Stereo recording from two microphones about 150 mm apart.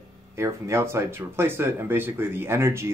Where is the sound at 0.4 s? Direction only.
20° right (ahead or behind).